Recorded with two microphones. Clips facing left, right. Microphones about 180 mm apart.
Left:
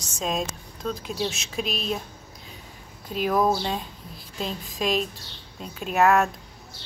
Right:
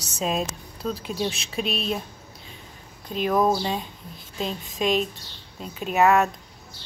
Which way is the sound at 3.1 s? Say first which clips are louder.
Right 1 dB; 5° left (ahead or behind).